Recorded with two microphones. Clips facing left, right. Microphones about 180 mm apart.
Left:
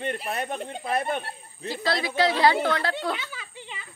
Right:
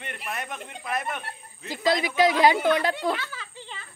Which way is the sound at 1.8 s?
15° right (ahead or behind).